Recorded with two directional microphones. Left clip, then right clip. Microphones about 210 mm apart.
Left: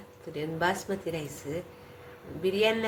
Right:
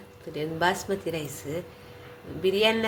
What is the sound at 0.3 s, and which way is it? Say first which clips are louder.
A woman's voice: right 3 dB; 10° right (ahead or behind).